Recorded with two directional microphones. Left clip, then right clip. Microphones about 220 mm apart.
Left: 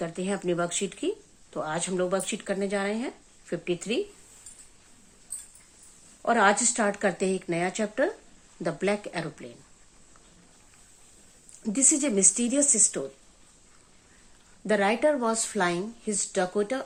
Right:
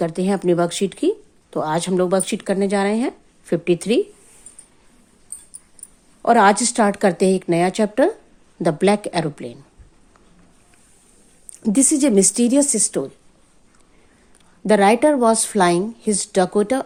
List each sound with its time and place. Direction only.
0.0 s speech: 40° right (ahead or behind)
6.2 s speech: 45° right (ahead or behind)
11.6 s speech: 40° right (ahead or behind)
14.7 s speech: 45° right (ahead or behind)